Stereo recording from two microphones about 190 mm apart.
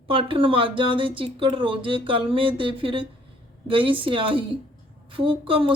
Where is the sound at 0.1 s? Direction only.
25° right (ahead or behind).